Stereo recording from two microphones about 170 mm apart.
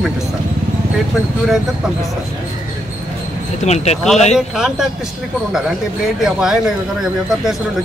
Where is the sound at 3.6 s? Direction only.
40° left (ahead or behind).